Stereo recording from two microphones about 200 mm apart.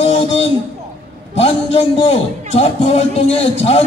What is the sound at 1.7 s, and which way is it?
A man's voice, 30° left (ahead or behind).